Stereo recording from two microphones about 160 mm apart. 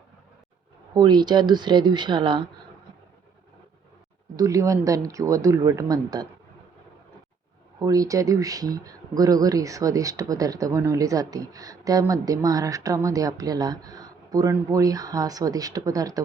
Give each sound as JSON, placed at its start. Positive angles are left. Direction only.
{"t": 0.9, "sound": "speech", "side_deg": -25}
{"t": 4.4, "sound": "speech", "side_deg": -20}
{"t": 7.8, "sound": "speech", "side_deg": -20}